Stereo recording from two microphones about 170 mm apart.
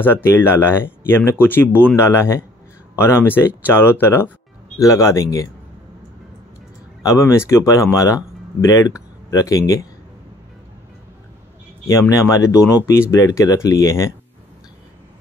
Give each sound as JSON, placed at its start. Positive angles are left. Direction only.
{"t": 0.0, "sound": "speech", "side_deg": 15}
{"t": 7.0, "sound": "speech", "side_deg": 20}
{"t": 11.8, "sound": "speech", "side_deg": 20}